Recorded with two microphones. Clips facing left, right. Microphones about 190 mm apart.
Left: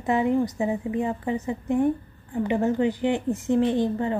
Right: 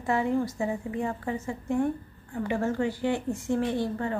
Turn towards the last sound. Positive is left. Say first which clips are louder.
# left 5 dB
turn(degrees=20)  # may be behind; listen again after turning